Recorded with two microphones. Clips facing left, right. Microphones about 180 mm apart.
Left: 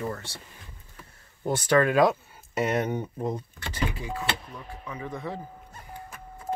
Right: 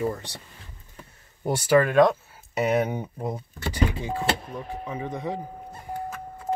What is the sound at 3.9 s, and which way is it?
Speech, 25° right (ahead or behind).